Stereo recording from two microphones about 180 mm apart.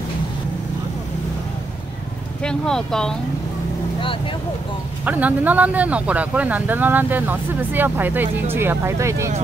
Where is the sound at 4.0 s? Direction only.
30° left (ahead or behind).